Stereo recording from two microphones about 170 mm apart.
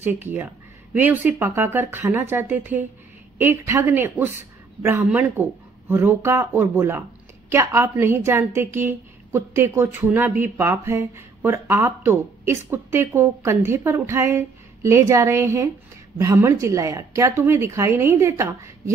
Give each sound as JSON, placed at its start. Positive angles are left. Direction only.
{"t": 0.0, "sound": "speech", "side_deg": -10}